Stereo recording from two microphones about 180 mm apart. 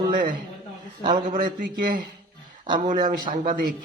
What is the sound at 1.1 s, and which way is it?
A man's voice, 50° right (ahead or behind).